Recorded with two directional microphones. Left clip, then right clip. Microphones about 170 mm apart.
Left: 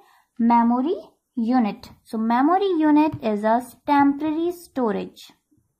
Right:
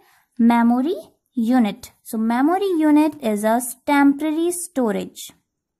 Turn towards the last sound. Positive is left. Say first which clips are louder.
# right 2 dB
turn(degrees=-45)  # may be behind; listen again after turning